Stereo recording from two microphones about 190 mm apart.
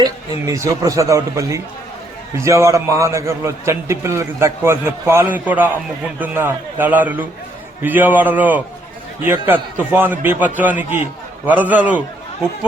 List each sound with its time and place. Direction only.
0.0 s a man's voice: 15° right (ahead or behind)